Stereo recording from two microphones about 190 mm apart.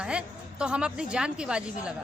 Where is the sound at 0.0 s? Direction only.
5° right (ahead or behind).